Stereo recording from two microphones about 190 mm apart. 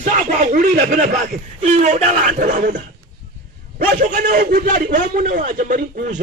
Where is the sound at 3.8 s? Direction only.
45° right (ahead or behind).